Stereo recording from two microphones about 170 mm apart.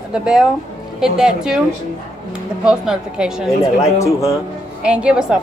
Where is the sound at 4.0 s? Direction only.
15° left (ahead or behind).